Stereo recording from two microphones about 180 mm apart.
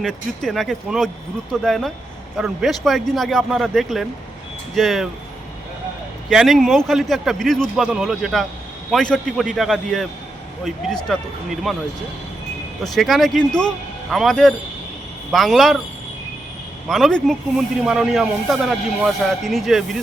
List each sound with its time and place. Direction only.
0.0 s speech: centre (ahead or behind)
6.3 s speech: centre (ahead or behind)
11.1 s speech: centre (ahead or behind)
12.9 s speech: centre (ahead or behind)
16.9 s speech: 5° left (ahead or behind)